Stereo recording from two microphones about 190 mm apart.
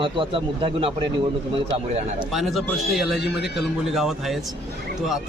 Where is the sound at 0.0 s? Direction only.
25° right (ahead or behind).